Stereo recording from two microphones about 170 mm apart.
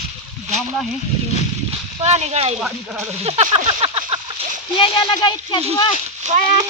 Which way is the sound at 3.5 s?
35° right (ahead or behind).